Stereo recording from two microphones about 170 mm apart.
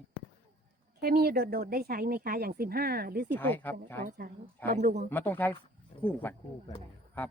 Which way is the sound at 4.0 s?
55° right (ahead or behind).